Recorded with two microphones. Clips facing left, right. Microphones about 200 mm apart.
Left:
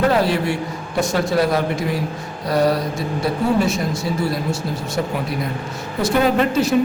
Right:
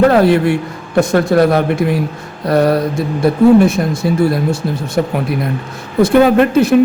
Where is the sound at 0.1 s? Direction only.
55° right (ahead or behind).